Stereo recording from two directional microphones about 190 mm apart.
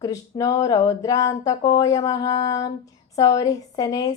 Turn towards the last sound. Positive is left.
turn(degrees=20)  # may be behind; listen again after turning